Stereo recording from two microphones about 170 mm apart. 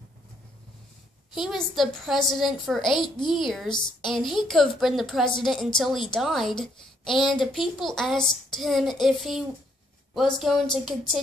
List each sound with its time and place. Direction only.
1.3 s a child's voice: centre (ahead or behind)
2.9 s a woman's voice: 25° left (ahead or behind)
3.3 s a child's voice: centre (ahead or behind)